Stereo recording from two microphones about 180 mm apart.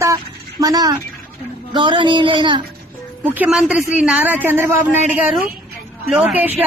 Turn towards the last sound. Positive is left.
turn(degrees=-10)  # may be behind; listen again after turning